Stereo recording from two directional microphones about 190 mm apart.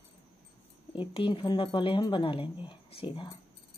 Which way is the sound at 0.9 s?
25° left (ahead or behind).